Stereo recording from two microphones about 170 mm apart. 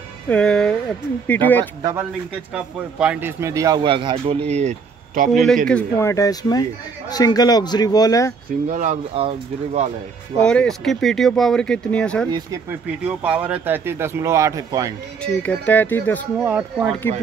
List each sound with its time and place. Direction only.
0.3 s speech: 5° left (ahead or behind)
1.8 s a man's voice: 20° right (ahead or behind)
2.5 s speech: 5° right (ahead or behind); by 4.4 s 30° right (ahead or behind)
4.5 s speech: 40° right (ahead or behind)
5.7 s speech: 10° left (ahead or behind)
8.6 s speech: 50° right (ahead or behind)
9.1 s speech: 35° right (ahead or behind)
10.4 s speech: 5° left (ahead or behind)
13.0 s speech: 10° right (ahead or behind)
15.2 s speech: 10° left (ahead or behind)
16.4 s speech: 10° right (ahead or behind)